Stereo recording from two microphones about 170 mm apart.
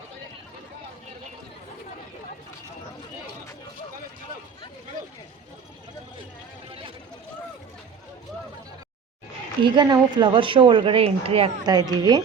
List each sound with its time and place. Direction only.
9.6 s a woman's voice: 25° right (ahead or behind)
11.6 s a woman's voice: 25° right (ahead or behind)